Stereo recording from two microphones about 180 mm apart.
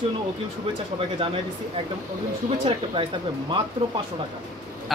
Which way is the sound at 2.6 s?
30° right (ahead or behind).